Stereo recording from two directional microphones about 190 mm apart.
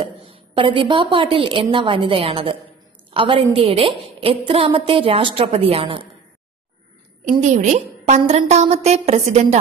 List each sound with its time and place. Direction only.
0.0 s a woman's voice: 30° right (ahead or behind)
7.2 s a woman's voice: 35° right (ahead or behind)